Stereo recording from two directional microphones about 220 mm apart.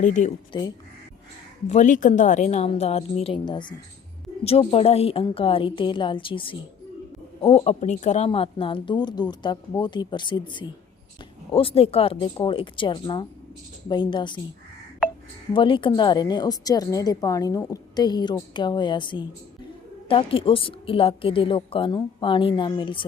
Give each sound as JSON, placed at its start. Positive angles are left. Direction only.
{"t": 0.0, "sound": "speech", "side_deg": 35}
{"t": 1.7, "sound": "a woman's voice", "side_deg": 35}
{"t": 15.5, "sound": "a woman's voice", "side_deg": 25}